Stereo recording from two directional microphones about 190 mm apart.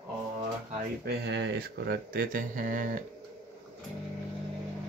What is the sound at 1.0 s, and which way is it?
Speech, 65° right (ahead or behind).